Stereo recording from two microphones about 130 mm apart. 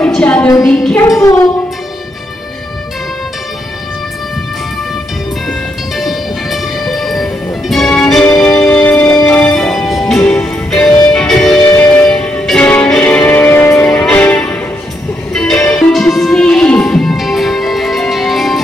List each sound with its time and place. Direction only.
0.0 s a sound: 10° left (ahead or behind)
1.0 s music: 25° left (ahead or behind)
5.5 s music: centre (ahead or behind)
11.6 s music: 15° left (ahead or behind); by 18.6 s centre (ahead or behind)